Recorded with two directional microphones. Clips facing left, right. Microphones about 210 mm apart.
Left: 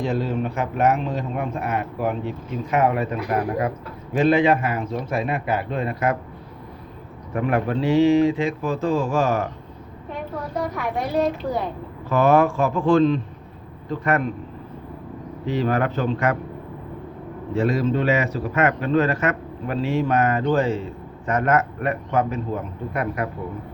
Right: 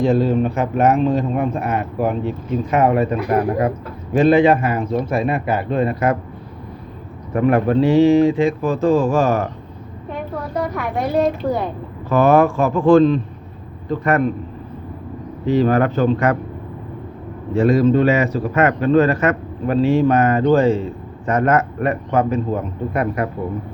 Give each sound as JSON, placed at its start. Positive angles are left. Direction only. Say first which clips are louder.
{"t": 0.0, "sound": "a man's voice", "louder": "right 8 dB", "side_deg": -35}
{"t": 7.3, "sound": "speech", "louder": "right 7 dB", "side_deg": -45}
{"t": 10.6, "sound": "a woman's voice", "louder": "right 4 dB", "side_deg": -60}
{"t": 12.0, "sound": "speech", "louder": "right 4 dB", "side_deg": -45}
{"t": 15.4, "sound": "speech", "louder": "right 6 dB", "side_deg": -40}
{"t": 17.6, "sound": "a man's voice", "louder": "right 7 dB", "side_deg": -45}